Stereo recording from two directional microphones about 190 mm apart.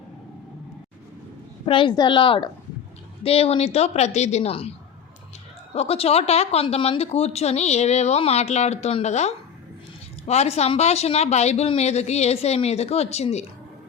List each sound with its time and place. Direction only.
1.6 s speech: 25° left (ahead or behind)
5.7 s speech: 30° left (ahead or behind)